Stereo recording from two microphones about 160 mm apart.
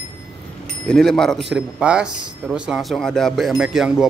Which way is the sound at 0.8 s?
5° left (ahead or behind).